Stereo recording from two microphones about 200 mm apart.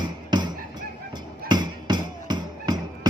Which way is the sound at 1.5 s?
20° right (ahead or behind).